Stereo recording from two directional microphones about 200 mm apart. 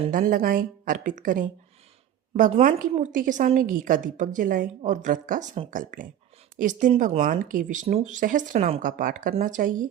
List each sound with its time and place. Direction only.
0.1 s a woman's voice: 45° right (ahead or behind)